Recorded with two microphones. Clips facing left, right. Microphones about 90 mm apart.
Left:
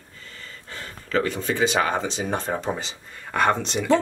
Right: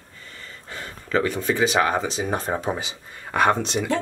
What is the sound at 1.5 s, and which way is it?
Speech, 5° right (ahead or behind).